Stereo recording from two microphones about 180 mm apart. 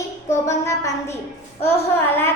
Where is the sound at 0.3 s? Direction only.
15° left (ahead or behind).